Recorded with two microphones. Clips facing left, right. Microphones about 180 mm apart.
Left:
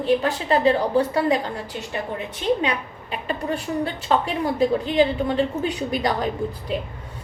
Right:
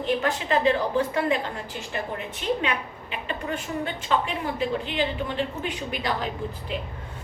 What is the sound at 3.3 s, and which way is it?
A woman's voice, 35° left (ahead or behind).